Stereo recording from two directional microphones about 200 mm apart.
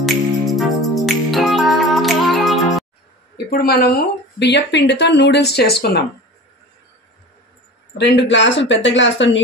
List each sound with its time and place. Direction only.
0.0 s music: centre (ahead or behind)
3.4 s speech: 50° left (ahead or behind)
8.0 s speech: 60° left (ahead or behind)